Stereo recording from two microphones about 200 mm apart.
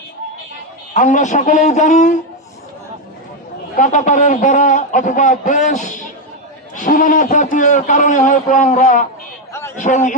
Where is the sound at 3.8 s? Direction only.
40° left (ahead or behind).